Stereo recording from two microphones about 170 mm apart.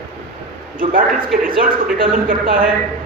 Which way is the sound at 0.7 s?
55° right (ahead or behind).